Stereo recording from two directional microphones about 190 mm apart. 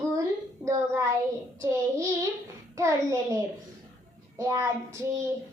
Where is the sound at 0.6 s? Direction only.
15° right (ahead or behind).